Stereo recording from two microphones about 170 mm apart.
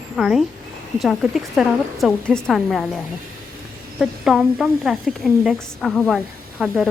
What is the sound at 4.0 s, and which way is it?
A woman's voice, 5° right (ahead or behind).